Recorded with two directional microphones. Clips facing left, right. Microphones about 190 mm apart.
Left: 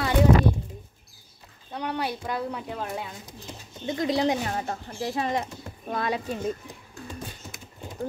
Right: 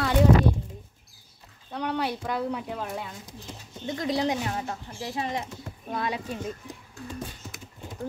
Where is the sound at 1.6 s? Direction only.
5° left (ahead or behind).